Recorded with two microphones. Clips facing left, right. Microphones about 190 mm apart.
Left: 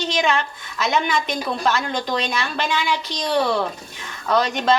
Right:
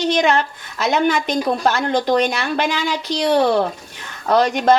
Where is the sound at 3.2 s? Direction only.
60° right (ahead or behind).